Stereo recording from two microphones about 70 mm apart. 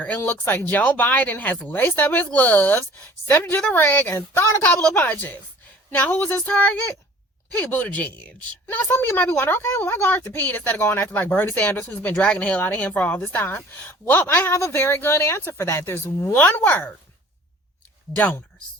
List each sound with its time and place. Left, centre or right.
0.2 s a woman's voice: left
7.7 s a woman's voice: left
10.8 s speech: left
11.1 s a woman's voice: left
16.3 s a woman's voice: left